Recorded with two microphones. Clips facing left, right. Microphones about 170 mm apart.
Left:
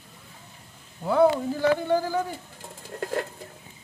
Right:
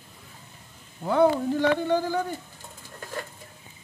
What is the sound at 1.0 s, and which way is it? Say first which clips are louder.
Speech: left 1 dB; centre (ahead or behind).